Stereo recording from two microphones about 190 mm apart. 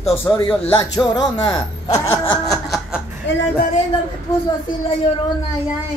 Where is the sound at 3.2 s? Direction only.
70° left (ahead or behind).